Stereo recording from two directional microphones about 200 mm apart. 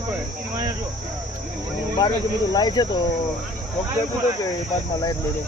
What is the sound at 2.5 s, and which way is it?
Speech, 20° left (ahead or behind).